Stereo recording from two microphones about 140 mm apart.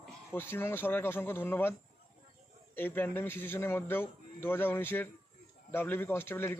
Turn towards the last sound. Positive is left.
turn(degrees=15)  # may be behind; listen again after turning